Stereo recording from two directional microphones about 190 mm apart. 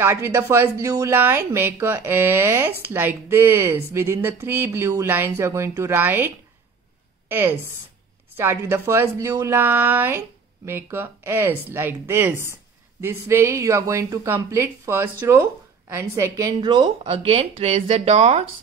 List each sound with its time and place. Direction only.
0.0 s a woman's voice: 15° right (ahead or behind); by 18.5 s 35° right (ahead or behind)